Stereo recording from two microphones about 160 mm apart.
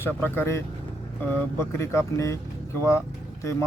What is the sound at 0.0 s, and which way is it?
Speech, 15° left (ahead or behind).